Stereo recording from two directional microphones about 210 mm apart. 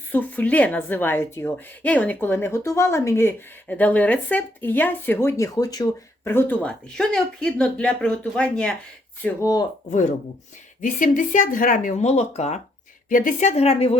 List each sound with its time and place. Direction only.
0.1 s a woman's voice: 10° left (ahead or behind)
9.9 s speech: 35° left (ahead or behind)